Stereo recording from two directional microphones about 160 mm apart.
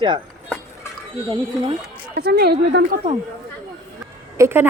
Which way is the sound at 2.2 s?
85° right.